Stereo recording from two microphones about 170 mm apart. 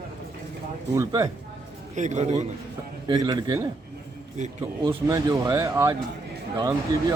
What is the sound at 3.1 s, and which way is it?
Speech, 25° right (ahead or behind).